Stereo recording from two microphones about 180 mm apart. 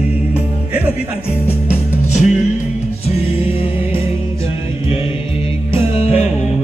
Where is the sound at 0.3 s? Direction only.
10° right (ahead or behind).